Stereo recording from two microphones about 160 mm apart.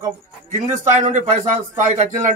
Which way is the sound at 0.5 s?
50° right (ahead or behind).